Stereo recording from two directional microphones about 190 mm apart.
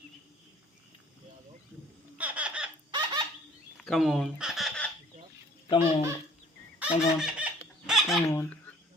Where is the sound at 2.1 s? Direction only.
10° right (ahead or behind).